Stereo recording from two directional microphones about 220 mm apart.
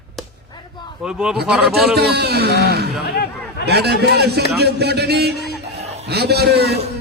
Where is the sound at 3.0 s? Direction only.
45° left (ahead or behind).